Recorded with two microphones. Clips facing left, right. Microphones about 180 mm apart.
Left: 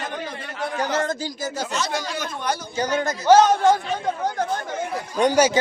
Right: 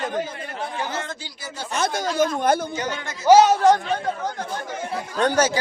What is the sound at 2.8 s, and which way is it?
Speech, 40° left (ahead or behind).